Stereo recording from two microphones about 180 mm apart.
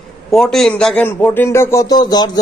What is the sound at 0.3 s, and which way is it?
A man's voice, centre (ahead or behind).